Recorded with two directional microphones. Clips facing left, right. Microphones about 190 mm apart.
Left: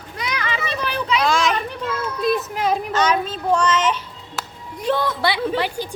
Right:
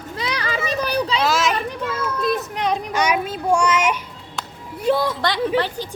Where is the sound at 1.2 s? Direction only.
5° right (ahead or behind).